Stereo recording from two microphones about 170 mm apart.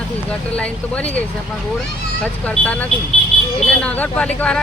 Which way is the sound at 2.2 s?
10° left (ahead or behind).